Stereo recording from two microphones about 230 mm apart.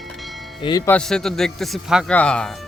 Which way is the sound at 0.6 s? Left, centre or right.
Centre.